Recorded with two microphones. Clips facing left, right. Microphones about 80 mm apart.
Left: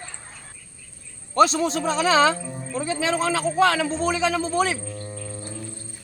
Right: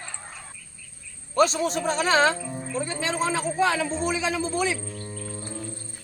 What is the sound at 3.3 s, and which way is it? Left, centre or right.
Speech, left.